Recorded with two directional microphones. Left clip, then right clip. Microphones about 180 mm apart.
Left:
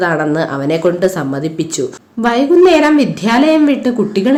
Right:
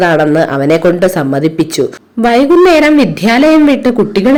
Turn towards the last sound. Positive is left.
turn(degrees=-20)  # may be behind; listen again after turning